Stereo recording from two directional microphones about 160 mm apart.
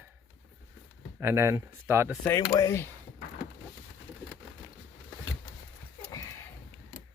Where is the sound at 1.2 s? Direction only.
15° right (ahead or behind).